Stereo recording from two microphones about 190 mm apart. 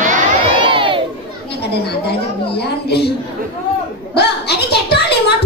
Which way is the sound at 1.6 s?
60° left (ahead or behind).